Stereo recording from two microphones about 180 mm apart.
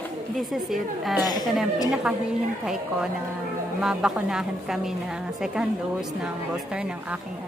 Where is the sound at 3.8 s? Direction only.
5° right (ahead or behind).